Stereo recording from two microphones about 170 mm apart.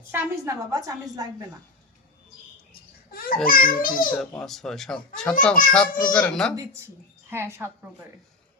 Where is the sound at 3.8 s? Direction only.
55° left (ahead or behind).